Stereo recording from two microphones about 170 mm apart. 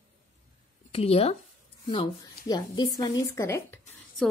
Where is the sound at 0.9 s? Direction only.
35° left (ahead or behind).